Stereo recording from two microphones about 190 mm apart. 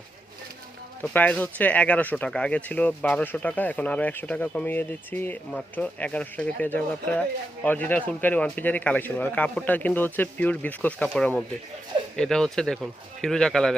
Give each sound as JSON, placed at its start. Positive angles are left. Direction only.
{"t": 1.0, "sound": "speech", "side_deg": 10}